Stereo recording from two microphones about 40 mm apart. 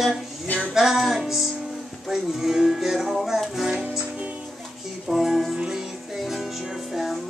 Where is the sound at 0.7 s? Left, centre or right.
Centre.